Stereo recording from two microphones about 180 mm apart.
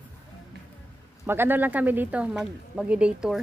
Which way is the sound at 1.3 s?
10° right (ahead or behind).